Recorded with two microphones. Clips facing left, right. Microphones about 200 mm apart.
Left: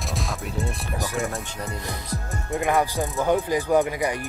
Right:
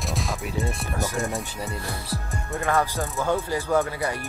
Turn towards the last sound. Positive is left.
turn(degrees=15)  # may be behind; listen again after turning